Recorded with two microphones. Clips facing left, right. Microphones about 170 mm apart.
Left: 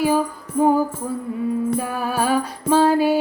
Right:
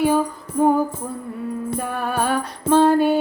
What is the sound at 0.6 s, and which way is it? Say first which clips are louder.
Music: even; 5° left (ahead or behind).